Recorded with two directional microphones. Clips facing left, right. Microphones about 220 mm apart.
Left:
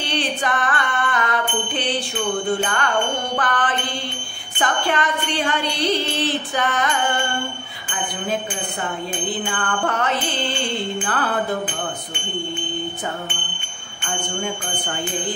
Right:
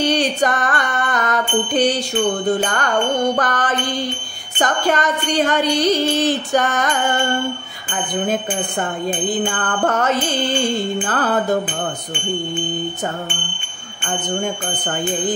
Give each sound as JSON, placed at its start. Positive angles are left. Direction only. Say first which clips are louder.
{"t": 0.0, "sound": "music", "louder": "right 7 dB", "side_deg": -40}
{"t": 9.4, "sound": "music", "louder": "right 4 dB", "side_deg": -45}